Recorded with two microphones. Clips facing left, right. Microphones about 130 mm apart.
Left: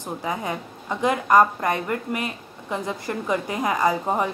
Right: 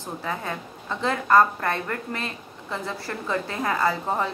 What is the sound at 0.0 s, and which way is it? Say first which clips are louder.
A woman's voice: left 3 dB; 15° left (ahead or behind).